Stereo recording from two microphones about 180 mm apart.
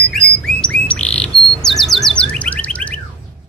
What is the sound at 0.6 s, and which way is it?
Bird, 5° left (ahead or behind).